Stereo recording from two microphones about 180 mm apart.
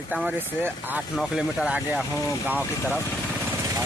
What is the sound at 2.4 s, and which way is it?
Speech, 10° right (ahead or behind).